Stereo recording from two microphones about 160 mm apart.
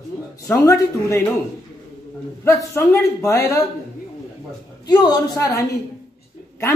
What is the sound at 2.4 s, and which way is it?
A man's voice, 15° left (ahead or behind).